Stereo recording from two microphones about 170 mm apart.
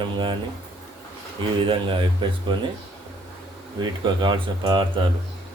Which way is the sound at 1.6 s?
30° right (ahead or behind).